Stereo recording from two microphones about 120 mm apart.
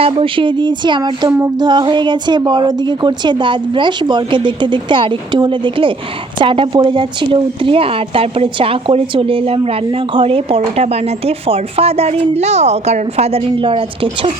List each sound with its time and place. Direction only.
0.0 s a woman's voice: 50° right (ahead or behind)